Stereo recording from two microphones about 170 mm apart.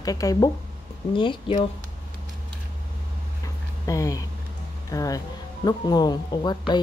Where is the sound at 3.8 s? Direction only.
20° left (ahead or behind).